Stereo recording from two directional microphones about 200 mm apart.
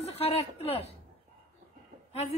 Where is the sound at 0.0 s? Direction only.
30° left (ahead or behind).